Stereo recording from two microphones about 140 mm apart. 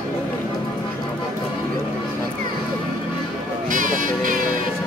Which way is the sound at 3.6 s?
75° right (ahead or behind).